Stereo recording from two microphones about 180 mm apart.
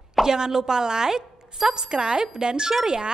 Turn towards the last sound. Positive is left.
turn(degrees=-5)  # may be behind; listen again after turning